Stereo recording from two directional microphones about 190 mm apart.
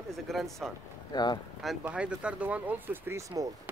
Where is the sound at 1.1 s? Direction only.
20° left (ahead or behind).